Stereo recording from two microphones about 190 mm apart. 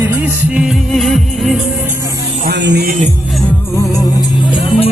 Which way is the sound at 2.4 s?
60° right (ahead or behind).